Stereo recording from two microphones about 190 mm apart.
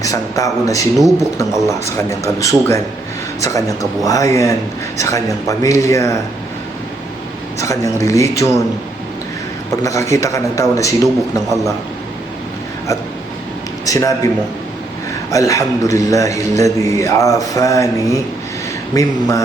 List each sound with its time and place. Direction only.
0.0 s a man's voice: 15° left (ahead or behind)
0.9 s speech: centre (ahead or behind)
1.4 s a man's voice: 15° left (ahead or behind)
7.6 s a man's voice: 15° left (ahead or behind)
9.8 s a man's voice: 15° left (ahead or behind)
13.8 s a man's voice: 15° left (ahead or behind)
15.3 s a man's voice: 15° left (ahead or behind)